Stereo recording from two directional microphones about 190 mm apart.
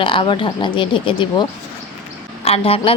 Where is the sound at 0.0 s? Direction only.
25° left (ahead or behind).